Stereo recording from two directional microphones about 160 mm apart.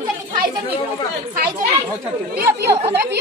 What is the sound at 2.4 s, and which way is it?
Speech, 90° right.